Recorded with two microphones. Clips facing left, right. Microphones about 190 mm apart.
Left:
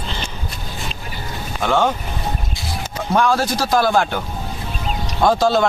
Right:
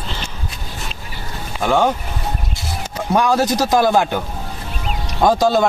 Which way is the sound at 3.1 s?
15° right (ahead or behind).